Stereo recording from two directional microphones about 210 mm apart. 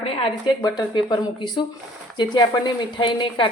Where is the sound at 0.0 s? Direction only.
25° left (ahead or behind).